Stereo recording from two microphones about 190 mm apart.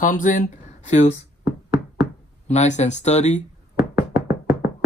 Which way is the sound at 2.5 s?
35° left (ahead or behind).